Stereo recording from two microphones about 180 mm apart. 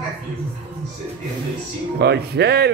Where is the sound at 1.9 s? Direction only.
65° right (ahead or behind).